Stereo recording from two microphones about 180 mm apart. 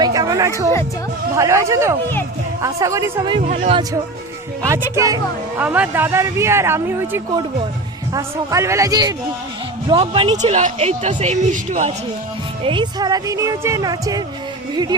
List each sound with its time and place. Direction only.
0.0 s a sound: 20° right (ahead or behind)
1.4 s speech: 15° right (ahead or behind)
3.4 s speech: 45° right (ahead or behind)
3.7 s speech: 25° right (ahead or behind)
9.9 s speech: 30° right (ahead or behind)
12.6 s speech: 25° right (ahead or behind)